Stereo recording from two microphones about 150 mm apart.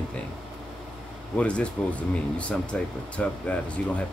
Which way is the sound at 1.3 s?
10° left (ahead or behind).